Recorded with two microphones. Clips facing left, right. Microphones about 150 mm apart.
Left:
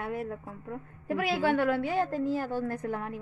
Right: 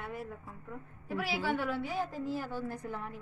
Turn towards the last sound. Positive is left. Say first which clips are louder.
# left 6 dB
turn(degrees=50)  # may be behind; listen again after turning